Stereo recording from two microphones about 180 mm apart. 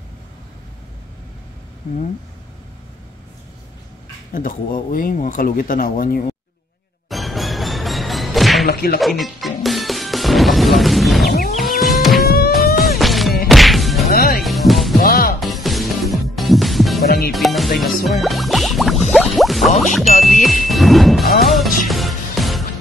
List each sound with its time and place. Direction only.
4.3 s speech: 50° left (ahead or behind)
7.1 s music: centre (ahead or behind)
8.6 s music: 60° left (ahead or behind)
9.0 s music: centre (ahead or behind)
13.5 s whack: centre (ahead or behind)
14.0 s music: 55° left (ahead or behind)
14.4 s music: centre (ahead or behind)
15.0 s music: 55° left (ahead or behind)
15.4 s music: centre (ahead or behind)